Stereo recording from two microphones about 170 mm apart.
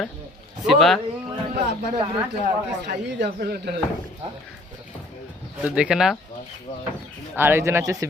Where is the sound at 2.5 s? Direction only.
80° right.